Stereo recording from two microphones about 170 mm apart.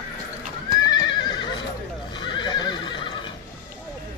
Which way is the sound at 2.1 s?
25° left (ahead or behind).